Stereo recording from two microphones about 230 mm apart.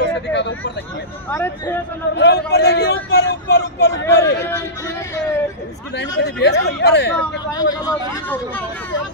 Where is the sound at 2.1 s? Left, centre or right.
Left.